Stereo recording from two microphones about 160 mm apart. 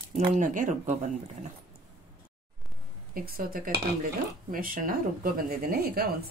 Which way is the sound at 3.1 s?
65° right (ahead or behind).